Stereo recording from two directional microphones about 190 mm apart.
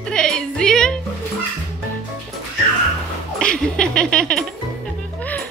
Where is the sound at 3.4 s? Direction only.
5° left (ahead or behind).